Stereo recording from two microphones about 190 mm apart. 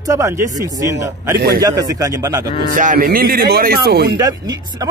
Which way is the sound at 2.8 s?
45° right (ahead or behind).